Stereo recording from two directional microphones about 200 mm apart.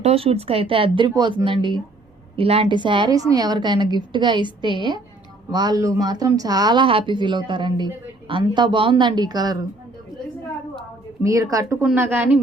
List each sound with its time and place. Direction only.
0.0 s a woman's voice: 30° right (ahead or behind)
11.2 s a woman's voice: 15° right (ahead or behind)